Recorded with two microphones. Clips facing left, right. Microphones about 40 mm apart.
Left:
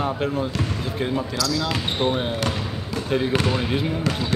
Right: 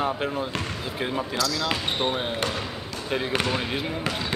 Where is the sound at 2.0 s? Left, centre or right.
Centre.